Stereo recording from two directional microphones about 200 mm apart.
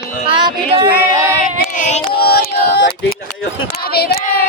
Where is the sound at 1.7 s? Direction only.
35° left (ahead or behind).